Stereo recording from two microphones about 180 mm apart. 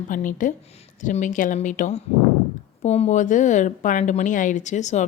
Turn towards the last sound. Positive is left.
turn(degrees=40)  # may be behind; listen again after turning